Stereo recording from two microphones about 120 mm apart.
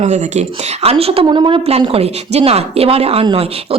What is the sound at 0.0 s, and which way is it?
A woman's voice, 70° right (ahead or behind).